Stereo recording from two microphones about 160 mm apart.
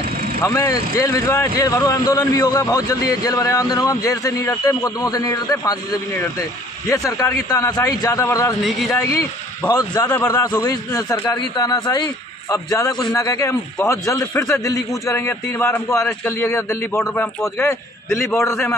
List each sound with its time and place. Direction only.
0.4 s speech: 20° left (ahead or behind)
6.9 s speech: 20° left (ahead or behind)
8.6 s speech: centre (ahead or behind)
9.7 s a man's voice: 25° left (ahead or behind)